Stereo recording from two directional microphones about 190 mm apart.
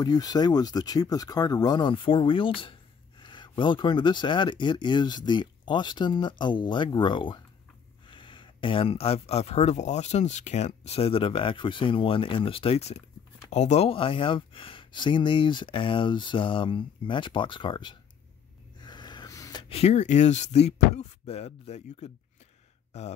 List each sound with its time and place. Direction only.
0.0 s speech: 20° left (ahead or behind)
18.8 s snort: 20° left (ahead or behind)
19.7 s speech: 35° left (ahead or behind)